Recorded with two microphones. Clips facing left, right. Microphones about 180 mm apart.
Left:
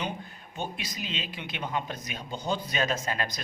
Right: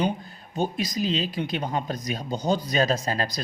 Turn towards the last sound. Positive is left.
turn(degrees=-35)  # may be behind; listen again after turning